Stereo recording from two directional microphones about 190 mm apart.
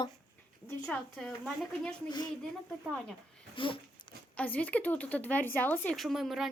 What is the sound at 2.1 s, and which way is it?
Speech, 20° left (ahead or behind).